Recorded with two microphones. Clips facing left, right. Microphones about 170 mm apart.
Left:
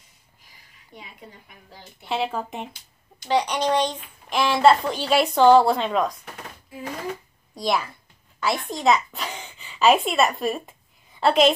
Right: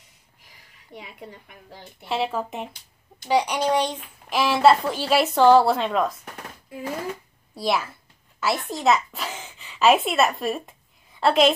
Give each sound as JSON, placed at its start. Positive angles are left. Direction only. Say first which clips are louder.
{"t": 0.9, "sound": "a woman's voice", "louder": "right 3 dB", "side_deg": -70}
{"t": 2.0, "sound": "a woman's voice", "louder": "right 1 dB", "side_deg": 0}
{"t": 7.5, "sound": "a sound", "louder": "even", "side_deg": -5}